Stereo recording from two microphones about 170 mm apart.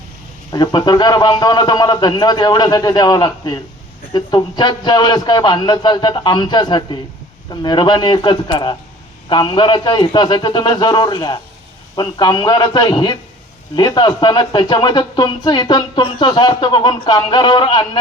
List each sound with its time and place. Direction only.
0.5 s speech: 25° left (ahead or behind)